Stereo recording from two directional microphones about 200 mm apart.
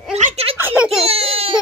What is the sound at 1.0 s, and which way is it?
Speech, 30° right (ahead or behind).